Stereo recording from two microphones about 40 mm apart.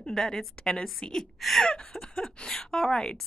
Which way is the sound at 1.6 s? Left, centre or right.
Left.